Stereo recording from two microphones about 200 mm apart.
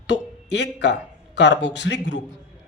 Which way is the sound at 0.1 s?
60° left (ahead or behind).